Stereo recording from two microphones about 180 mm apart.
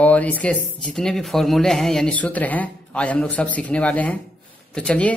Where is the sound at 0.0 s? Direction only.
10° left (ahead or behind).